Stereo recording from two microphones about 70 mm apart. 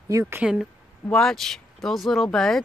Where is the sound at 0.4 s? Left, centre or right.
Centre.